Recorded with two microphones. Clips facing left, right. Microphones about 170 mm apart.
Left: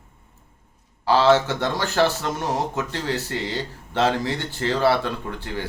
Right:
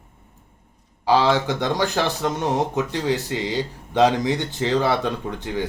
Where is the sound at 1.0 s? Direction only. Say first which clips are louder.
Left 1 dB; 15° right (ahead or behind).